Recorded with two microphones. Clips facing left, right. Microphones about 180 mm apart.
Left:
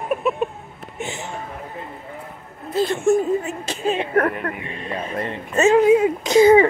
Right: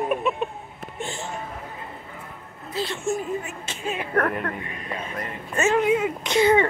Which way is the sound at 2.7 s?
50° left (ahead or behind).